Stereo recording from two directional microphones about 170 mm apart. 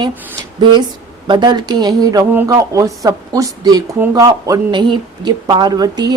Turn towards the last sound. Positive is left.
turn(degrees=-25)  # may be behind; listen again after turning